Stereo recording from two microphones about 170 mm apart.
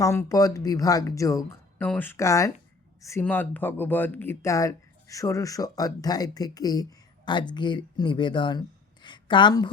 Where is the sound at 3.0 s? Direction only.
15° left (ahead or behind).